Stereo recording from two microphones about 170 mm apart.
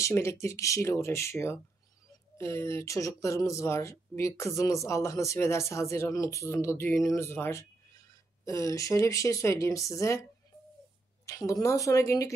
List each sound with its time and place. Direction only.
0.0 s speech: 15° left (ahead or behind)
11.2 s speech: 20° left (ahead or behind)